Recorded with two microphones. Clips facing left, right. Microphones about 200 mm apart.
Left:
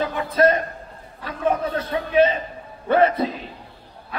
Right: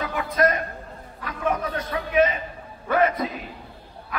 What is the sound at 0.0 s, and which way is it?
Speech, 30° left (ahead or behind).